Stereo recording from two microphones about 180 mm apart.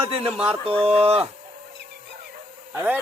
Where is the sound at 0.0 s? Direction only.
30° right (ahead or behind).